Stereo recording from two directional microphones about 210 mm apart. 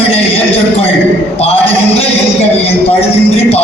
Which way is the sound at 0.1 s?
25° left (ahead or behind).